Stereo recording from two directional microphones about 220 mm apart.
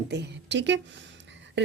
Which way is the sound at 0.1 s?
50° right (ahead or behind).